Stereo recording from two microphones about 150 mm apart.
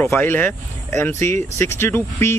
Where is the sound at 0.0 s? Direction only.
15° left (ahead or behind).